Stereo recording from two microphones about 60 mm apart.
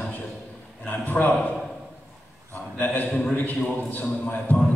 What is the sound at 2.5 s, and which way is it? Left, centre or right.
Speech, left.